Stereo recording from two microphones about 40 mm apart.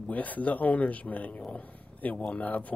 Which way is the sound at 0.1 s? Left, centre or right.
Left.